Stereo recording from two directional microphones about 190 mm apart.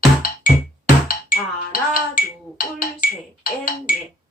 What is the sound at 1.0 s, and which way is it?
Music, 45° left (ahead or behind).